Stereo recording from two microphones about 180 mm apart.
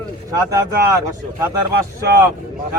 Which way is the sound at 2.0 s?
15° right (ahead or behind).